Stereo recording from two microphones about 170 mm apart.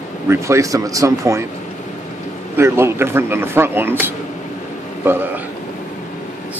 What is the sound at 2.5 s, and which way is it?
Speech, 15° right (ahead or behind).